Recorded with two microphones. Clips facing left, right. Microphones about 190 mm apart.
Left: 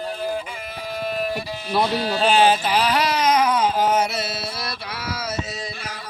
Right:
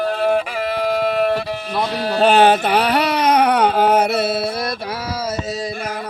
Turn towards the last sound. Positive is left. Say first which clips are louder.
# right 8 dB
turn(degrees=-55)  # may be behind; listen again after turning